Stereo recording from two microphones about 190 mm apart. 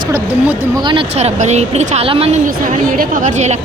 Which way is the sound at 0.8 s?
25° right (ahead or behind).